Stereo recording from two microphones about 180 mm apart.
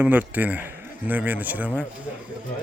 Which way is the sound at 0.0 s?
10° right (ahead or behind).